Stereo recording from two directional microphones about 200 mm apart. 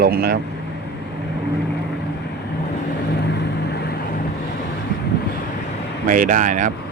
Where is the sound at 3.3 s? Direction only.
55° left (ahead or behind).